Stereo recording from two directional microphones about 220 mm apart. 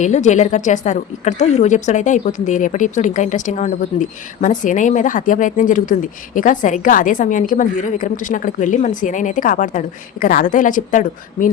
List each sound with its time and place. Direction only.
0.0 s a woman's voice: 30° left (ahead or behind)